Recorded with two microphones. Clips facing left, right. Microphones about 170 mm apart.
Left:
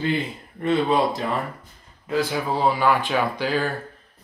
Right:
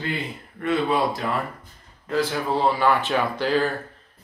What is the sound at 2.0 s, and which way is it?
Speech, 10° left (ahead or behind).